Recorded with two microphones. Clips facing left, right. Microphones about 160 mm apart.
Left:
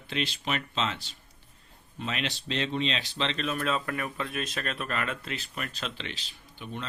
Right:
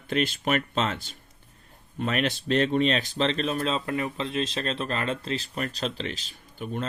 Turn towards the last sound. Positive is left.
turn(degrees=-45)  # may be behind; listen again after turning